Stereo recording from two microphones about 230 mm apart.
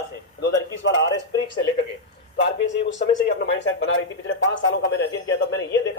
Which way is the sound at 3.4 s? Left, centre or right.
Left.